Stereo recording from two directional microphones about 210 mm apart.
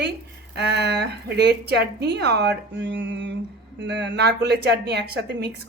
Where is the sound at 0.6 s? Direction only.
50° right (ahead or behind).